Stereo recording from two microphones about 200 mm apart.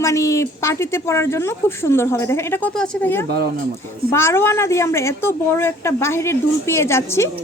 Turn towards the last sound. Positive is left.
turn(degrees=15)  # may be behind; listen again after turning